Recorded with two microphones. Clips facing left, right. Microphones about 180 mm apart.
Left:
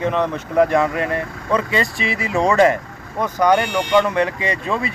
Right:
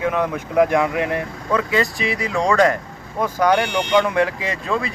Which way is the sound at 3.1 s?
5° right (ahead or behind).